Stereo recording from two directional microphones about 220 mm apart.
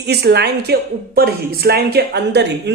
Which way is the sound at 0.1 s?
50° right (ahead or behind).